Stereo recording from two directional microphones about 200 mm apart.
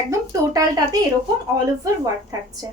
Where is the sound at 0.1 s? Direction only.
15° right (ahead or behind).